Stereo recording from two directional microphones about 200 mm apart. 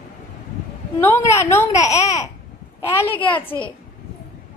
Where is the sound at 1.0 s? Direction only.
10° left (ahead or behind).